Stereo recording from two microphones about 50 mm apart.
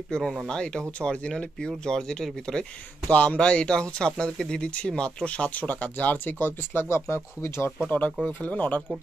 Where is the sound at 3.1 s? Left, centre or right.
Left.